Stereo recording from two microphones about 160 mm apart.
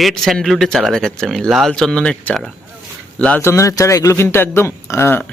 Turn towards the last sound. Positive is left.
turn(degrees=15)  # may be behind; listen again after turning